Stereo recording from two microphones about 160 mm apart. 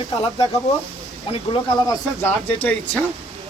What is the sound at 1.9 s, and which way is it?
Speech, 15° left (ahead or behind).